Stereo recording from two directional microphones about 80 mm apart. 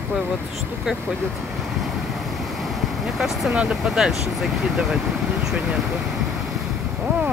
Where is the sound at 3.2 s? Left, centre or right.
Centre.